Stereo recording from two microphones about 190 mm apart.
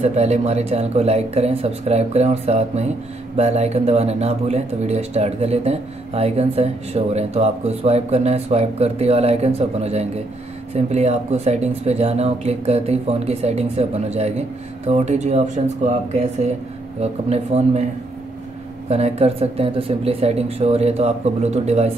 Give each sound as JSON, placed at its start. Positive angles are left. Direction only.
{"t": 0.0, "sound": "speech", "side_deg": -35}
{"t": 18.9, "sound": "speech", "side_deg": -35}